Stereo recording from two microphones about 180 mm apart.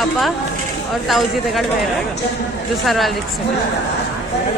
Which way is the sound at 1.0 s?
Centre (ahead or behind).